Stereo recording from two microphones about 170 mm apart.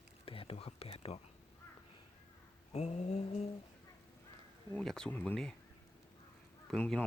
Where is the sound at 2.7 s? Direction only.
40° left (ahead or behind).